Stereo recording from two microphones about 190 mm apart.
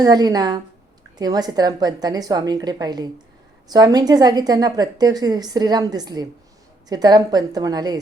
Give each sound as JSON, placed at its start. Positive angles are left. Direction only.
{"t": 0.0, "sound": "a woman's voice", "side_deg": -20}